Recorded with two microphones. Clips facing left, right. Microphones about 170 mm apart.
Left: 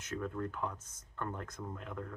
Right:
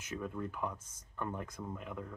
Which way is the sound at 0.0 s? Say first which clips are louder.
Left 1 dB; 10° right (ahead or behind).